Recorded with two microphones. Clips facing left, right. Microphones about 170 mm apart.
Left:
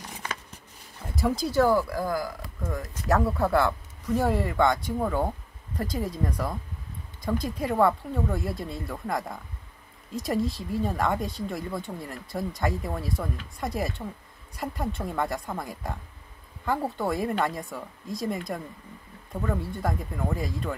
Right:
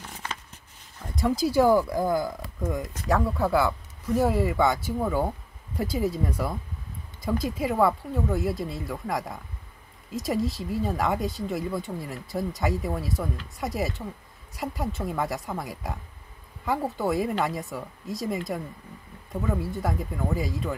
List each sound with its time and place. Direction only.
1.1 s speech: centre (ahead or behind); by 2.9 s 20° right (ahead or behind)
3.1 s speech: centre (ahead or behind)